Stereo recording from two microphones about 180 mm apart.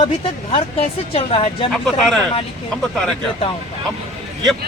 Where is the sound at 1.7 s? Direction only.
5° left (ahead or behind).